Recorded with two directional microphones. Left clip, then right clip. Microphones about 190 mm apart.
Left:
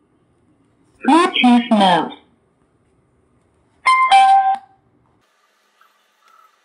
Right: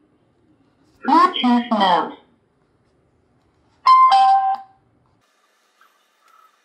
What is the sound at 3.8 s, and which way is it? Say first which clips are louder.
Music: even; 25° left (ahead or behind).